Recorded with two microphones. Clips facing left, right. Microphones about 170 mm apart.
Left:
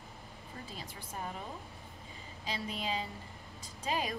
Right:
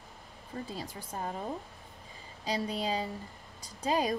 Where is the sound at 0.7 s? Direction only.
35° right (ahead or behind).